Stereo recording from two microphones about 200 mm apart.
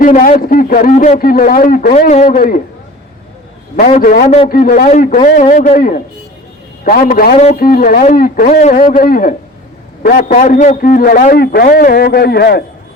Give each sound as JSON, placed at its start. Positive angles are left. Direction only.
{"t": 0.0, "sound": "a man's voice", "side_deg": 40}
{"t": 3.8, "sound": "a man's voice", "side_deg": 40}